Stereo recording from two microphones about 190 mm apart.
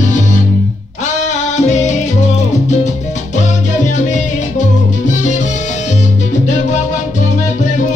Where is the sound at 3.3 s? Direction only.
40° left (ahead or behind).